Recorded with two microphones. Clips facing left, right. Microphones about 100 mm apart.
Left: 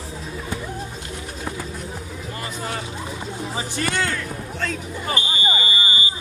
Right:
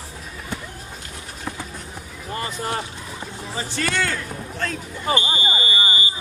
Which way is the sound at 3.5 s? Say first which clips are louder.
Right 1 dB; 15° left (ahead or behind).